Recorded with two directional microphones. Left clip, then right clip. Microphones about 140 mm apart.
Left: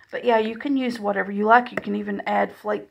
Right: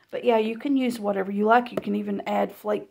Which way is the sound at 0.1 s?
Centre (ahead or behind).